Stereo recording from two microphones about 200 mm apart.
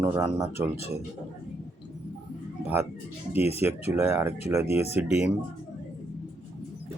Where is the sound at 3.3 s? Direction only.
30° left (ahead or behind).